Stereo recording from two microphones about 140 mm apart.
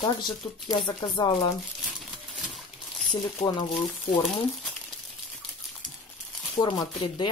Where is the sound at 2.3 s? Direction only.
Centre (ahead or behind).